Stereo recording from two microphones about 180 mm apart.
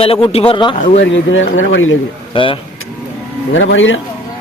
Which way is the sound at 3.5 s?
90° left.